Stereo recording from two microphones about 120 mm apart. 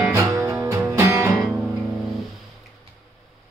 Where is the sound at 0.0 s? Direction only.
20° right (ahead or behind).